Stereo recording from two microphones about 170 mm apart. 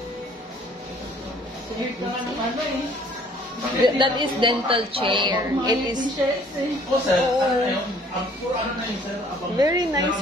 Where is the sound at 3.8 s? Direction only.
25° right (ahead or behind).